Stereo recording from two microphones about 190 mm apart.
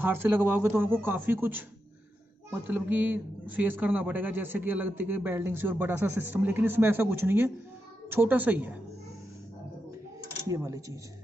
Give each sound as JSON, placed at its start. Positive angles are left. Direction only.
{"t": 0.0, "sound": "a man's voice", "side_deg": -10}
{"t": 2.6, "sound": "a man's voice", "side_deg": -10}
{"t": 10.5, "sound": "a man's voice", "side_deg": -15}